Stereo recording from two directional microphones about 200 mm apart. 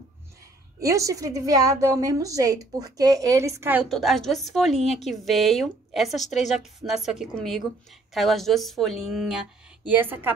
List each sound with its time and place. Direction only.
0.7 s a woman's voice: 15° right (ahead or behind)
3.9 s a woman's voice: centre (ahead or behind)